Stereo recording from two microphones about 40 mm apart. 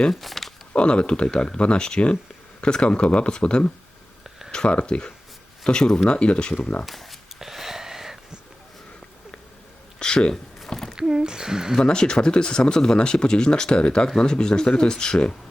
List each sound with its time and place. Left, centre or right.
0.1 s a sound: centre
0.7 s speech: left
4.7 s speech: left
6.1 s speech: left
6.8 s speech: centre
7.3 s a sound: centre
10.0 s a sound: centre
10.9 s speech: centre
11.8 s speech: centre